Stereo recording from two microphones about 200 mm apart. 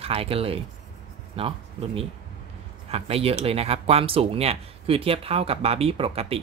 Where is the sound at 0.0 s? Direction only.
30° right (ahead or behind).